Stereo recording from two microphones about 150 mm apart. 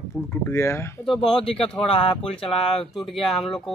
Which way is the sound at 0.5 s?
15° left (ahead or behind).